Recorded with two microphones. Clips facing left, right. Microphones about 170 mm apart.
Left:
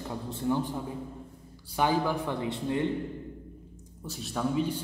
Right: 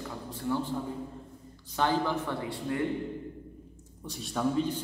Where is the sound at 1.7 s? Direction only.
10° left (ahead or behind).